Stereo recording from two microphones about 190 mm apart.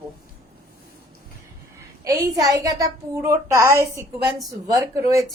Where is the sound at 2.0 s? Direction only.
20° right (ahead or behind).